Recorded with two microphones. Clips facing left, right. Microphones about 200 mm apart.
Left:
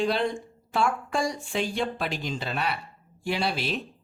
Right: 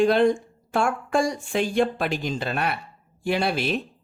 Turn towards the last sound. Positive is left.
turn(degrees=-50)  # may be behind; listen again after turning